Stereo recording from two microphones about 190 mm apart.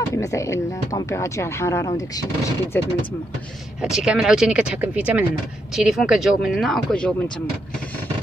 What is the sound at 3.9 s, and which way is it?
Speech, 5° right (ahead or behind).